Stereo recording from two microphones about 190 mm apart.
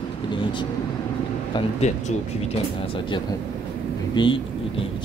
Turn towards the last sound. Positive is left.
turn(degrees=25)  # may be behind; listen again after turning